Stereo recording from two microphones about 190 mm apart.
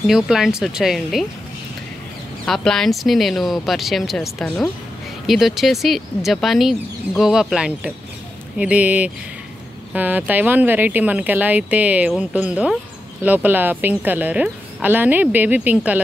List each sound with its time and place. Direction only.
0.0 s speech: centre (ahead or behind)
2.4 s speech: 5° left (ahead or behind)